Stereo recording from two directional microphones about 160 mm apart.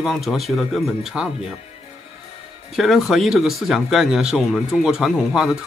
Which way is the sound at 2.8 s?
Centre (ahead or behind).